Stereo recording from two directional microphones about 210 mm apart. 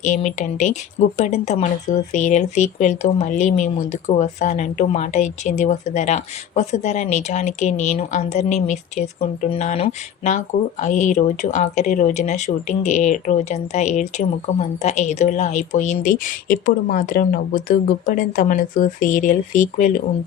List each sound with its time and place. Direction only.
0.0 s speech: 35° left (ahead or behind)